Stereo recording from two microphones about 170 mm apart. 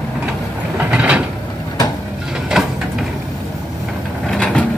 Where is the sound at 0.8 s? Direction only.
5° right (ahead or behind).